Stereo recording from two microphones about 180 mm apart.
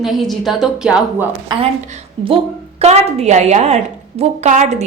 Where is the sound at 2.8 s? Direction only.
35° right (ahead or behind).